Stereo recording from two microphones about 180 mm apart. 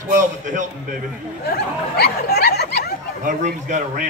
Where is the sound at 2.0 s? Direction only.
60° left (ahead or behind).